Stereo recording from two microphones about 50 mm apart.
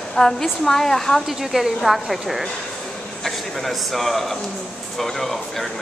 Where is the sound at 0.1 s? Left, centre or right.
Centre.